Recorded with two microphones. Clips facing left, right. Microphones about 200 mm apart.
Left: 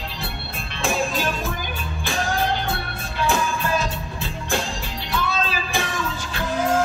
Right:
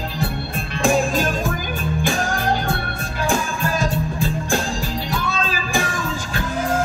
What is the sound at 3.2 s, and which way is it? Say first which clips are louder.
Music: right 1 dB; 45° right (ahead or behind).